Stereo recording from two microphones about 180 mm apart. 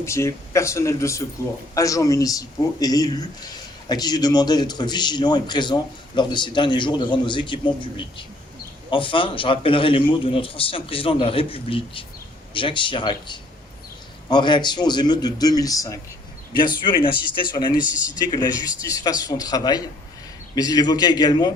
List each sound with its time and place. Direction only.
0.0 s a man's voice: 15° left (ahead or behind)
17.7 s a man's voice: 10° right (ahead or behind)
18.2 s a man's voice: 25° left (ahead or behind)